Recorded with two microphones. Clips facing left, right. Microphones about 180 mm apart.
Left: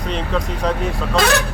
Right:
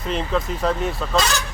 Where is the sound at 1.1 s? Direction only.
60° left (ahead or behind).